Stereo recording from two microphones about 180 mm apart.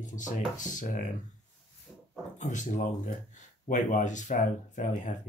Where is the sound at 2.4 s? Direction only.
45° left (ahead or behind).